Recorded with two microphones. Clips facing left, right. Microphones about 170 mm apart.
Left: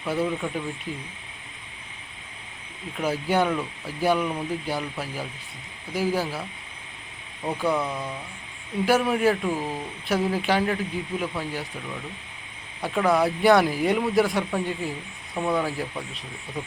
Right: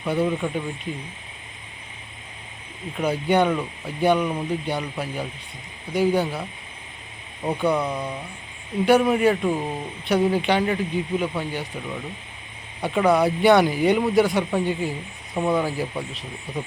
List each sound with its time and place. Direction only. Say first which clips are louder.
0.0 s speech: right 3 dB; centre (ahead or behind)
2.9 s speech: right 3 dB; 5° left (ahead or behind)
7.6 s speech: right 3 dB; centre (ahead or behind)
7.9 s speech: right 3 dB; 20° right (ahead or behind)
8.9 s speech: right 4 dB; centre (ahead or behind)
12.8 s speech: right 3 dB; centre (ahead or behind)